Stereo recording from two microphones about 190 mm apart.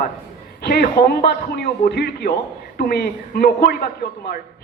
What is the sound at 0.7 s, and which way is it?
A woman's voice, 55° left (ahead or behind).